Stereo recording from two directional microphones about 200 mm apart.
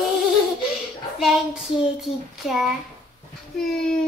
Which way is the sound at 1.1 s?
Centre (ahead or behind).